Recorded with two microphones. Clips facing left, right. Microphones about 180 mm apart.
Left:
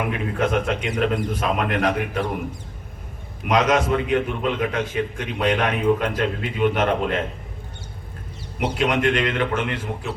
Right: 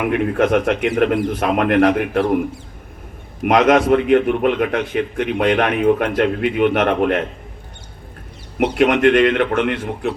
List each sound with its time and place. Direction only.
0.0 s a man's voice: 55° right (ahead or behind)
3.4 s a man's voice: 55° right (ahead or behind)
8.5 s a man's voice: 60° right (ahead or behind)